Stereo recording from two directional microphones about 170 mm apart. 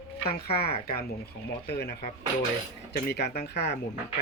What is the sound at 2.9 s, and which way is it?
Speech, 65° left (ahead or behind).